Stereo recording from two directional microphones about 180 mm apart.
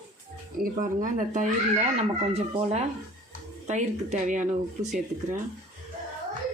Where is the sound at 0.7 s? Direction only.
45° right (ahead or behind).